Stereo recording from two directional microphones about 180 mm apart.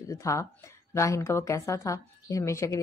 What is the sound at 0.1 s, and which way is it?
A woman's voice, 15° left (ahead or behind).